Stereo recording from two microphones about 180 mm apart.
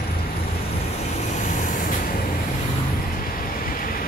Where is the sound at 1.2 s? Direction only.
45° left (ahead or behind).